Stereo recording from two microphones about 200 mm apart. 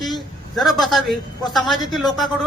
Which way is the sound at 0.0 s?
Centre (ahead or behind).